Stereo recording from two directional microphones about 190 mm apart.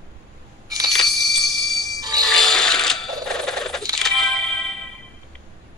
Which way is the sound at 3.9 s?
Centre (ahead or behind).